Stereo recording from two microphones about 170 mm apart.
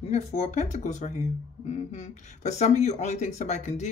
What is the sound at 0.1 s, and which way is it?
Speech, 40° left (ahead or behind).